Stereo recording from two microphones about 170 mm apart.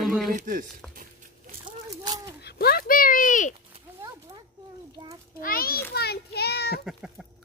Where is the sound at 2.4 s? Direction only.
70° left (ahead or behind); by 3.6 s 50° left (ahead or behind).